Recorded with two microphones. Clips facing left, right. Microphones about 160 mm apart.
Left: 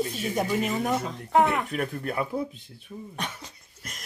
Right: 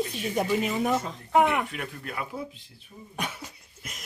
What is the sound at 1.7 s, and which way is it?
Speech, 40° left (ahead or behind).